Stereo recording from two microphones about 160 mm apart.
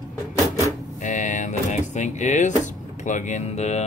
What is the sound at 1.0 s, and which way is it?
Speech, 50° left (ahead or behind).